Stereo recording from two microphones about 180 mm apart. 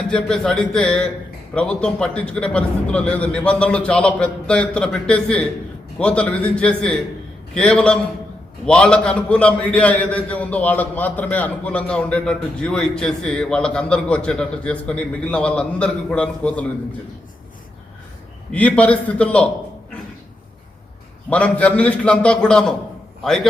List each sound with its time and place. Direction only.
0.1 s a man's voice: 5° left (ahead or behind)
18.5 s a man's voice: 5° left (ahead or behind)
21.2 s a man's voice: 5° left (ahead or behind)